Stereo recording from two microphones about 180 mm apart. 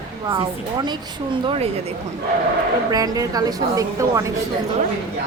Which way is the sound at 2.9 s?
20° right (ahead or behind).